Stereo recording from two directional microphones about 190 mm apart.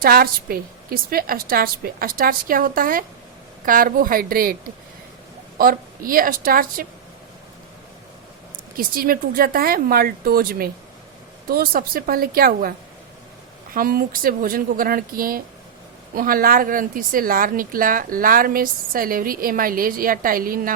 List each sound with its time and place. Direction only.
0.0 s a woman's voice: 50° right (ahead or behind)
5.5 s a woman's voice: 50° right (ahead or behind)
8.7 s a woman's voice: 50° right (ahead or behind)